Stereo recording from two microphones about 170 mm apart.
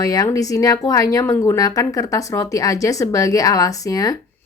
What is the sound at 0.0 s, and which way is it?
A woman's voice, 20° left (ahead or behind).